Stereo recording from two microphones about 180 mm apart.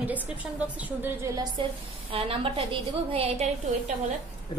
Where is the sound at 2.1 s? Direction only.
30° right (ahead or behind).